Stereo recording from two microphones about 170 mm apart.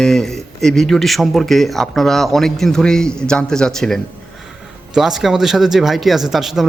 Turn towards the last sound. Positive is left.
turn(degrees=0)  # may be behind; listen again after turning